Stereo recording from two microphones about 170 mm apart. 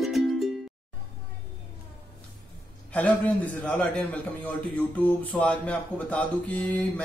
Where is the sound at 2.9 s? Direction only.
10° left (ahead or behind).